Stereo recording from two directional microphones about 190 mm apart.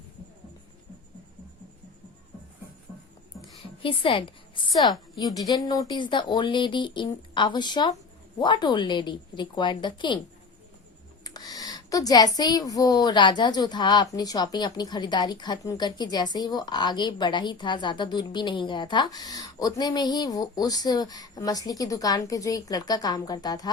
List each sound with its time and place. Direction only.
3.4 s speech: 25° left (ahead or behind)
11.2 s speech: 20° left (ahead or behind)